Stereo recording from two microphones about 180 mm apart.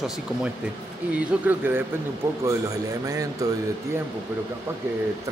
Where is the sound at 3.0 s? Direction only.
20° right (ahead or behind).